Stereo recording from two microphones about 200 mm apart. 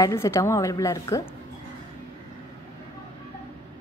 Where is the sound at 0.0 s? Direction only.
15° left (ahead or behind).